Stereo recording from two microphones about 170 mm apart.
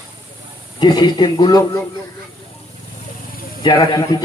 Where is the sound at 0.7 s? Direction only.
25° left (ahead or behind).